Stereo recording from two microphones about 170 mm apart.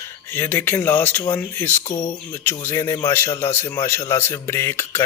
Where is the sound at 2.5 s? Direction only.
15° left (ahead or behind).